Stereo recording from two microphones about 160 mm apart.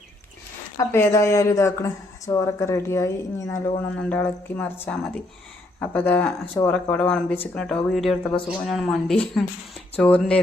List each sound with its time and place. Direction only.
0.8 s speech: 15° left (ahead or behind)
3.9 s speech: 10° left (ahead or behind)